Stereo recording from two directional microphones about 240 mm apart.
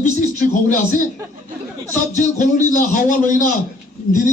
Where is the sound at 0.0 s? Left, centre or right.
Left.